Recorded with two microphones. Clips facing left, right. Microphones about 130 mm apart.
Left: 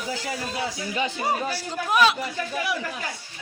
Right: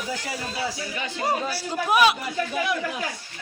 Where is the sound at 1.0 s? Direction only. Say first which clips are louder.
Left 1 dB; 15° left (ahead or behind).